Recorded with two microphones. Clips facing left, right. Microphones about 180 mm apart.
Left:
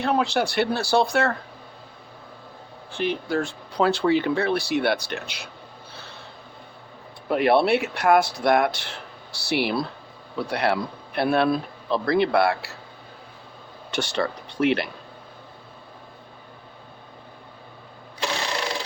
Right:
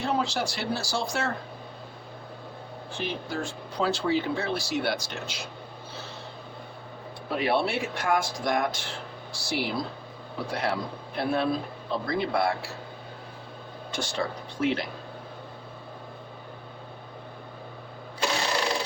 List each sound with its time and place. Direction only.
0.0 s speech: 65° left (ahead or behind)
3.0 s speech: 65° left (ahead or behind)
7.3 s speech: 60° left (ahead or behind)
13.9 s speech: 70° left (ahead or behind)